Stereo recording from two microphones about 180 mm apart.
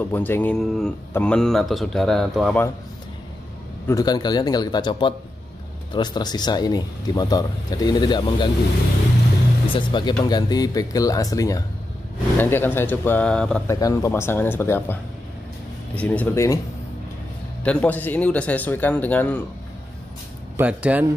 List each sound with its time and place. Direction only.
0.0 s a man's voice: 10° left (ahead or behind)
3.8 s a man's voice: 20° left (ahead or behind)
9.8 s a man's voice: 25° left (ahead or behind); by 13.6 s 5° left (ahead or behind)
13.7 s a man's voice: 20° left (ahead or behind)
17.6 s a man's voice: 10° left (ahead or behind)
20.5 s speech: 10° right (ahead or behind)